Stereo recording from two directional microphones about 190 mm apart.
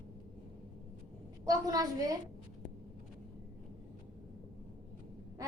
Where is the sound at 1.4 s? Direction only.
20° right (ahead or behind).